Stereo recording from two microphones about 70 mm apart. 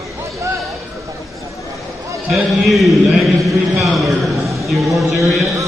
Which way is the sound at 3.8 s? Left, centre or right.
Centre.